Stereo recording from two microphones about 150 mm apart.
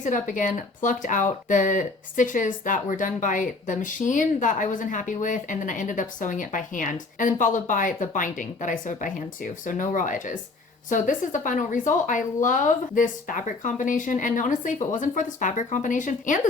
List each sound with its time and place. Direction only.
0.0 s speech: 55° left (ahead or behind)